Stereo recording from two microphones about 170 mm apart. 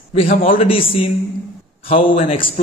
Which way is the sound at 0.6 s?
35° left (ahead or behind).